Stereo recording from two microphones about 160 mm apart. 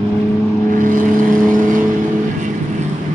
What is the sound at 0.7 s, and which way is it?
Vehicle, 55° right (ahead or behind).